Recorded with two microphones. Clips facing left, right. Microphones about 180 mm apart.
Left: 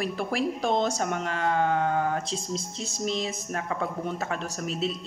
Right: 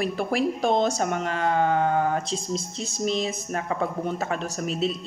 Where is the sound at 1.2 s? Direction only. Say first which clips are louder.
Right 2 dB; 5° right (ahead or behind).